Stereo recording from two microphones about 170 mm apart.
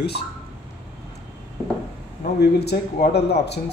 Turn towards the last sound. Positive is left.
turn(degrees=75)  # may be behind; listen again after turning